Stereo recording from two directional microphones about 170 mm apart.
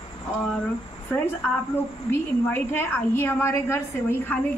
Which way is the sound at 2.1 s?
15° left (ahead or behind).